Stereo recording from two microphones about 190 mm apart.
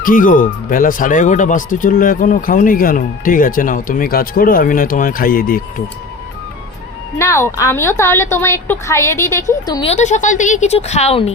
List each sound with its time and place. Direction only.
0.0 s speech: 45° left (ahead or behind)
7.2 s a woman's voice: 15° left (ahead or behind)
9.8 s a woman's voice: 40° left (ahead or behind)